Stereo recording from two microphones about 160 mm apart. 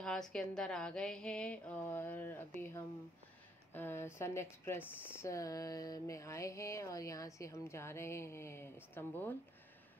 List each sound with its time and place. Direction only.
0.0 s a woman's voice: 5° left (ahead or behind)
3.7 s speech: 15° left (ahead or behind)